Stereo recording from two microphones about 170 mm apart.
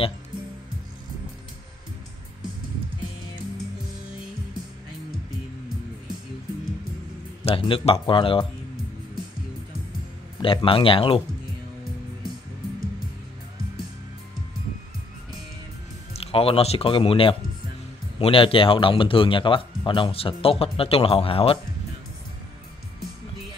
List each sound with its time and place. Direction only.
7.4 s speech: 30° left (ahead or behind)
10.4 s speech: 30° left (ahead or behind)
16.1 s speech: 35° left (ahead or behind)